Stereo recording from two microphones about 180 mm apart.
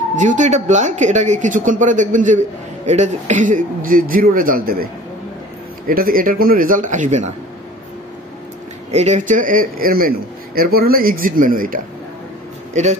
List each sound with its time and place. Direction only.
0.1 s a man's voice: 45° right (ahead or behind)
5.9 s a man's voice: 55° right (ahead or behind)
8.9 s a man's voice: 40° right (ahead or behind)